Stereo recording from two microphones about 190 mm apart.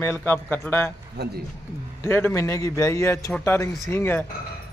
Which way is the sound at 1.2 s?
60° right (ahead or behind).